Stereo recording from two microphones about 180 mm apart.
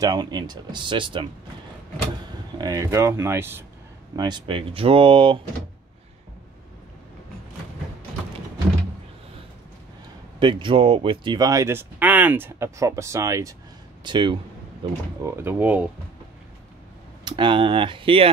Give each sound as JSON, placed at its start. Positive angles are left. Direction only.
{"t": 0.0, "sound": "speech", "side_deg": -20}
{"t": 2.6, "sound": "speech", "side_deg": -20}
{"t": 4.2, "sound": "speech", "side_deg": -25}
{"t": 10.4, "sound": "speech", "side_deg": -25}
{"t": 15.2, "sound": "speech", "side_deg": -10}
{"t": 17.2, "sound": "speech", "side_deg": -25}